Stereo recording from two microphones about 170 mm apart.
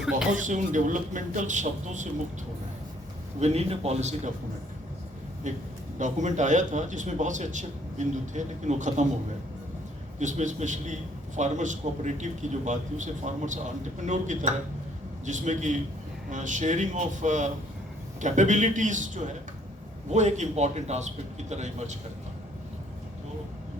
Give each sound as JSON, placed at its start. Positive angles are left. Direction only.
{"t": 0.3, "sound": "speech", "side_deg": -50}
{"t": 3.4, "sound": "a man's voice", "side_deg": -40}
{"t": 5.5, "sound": "speech", "side_deg": -45}
{"t": 10.2, "sound": "speech", "side_deg": -45}